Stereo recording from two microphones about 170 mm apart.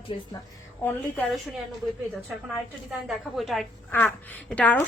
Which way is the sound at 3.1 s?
Centre (ahead or behind).